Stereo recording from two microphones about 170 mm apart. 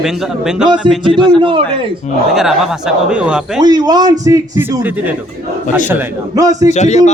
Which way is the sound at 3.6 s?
25° right (ahead or behind).